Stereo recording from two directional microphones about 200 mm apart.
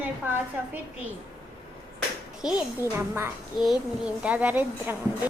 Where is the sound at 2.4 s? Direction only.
5° right (ahead or behind).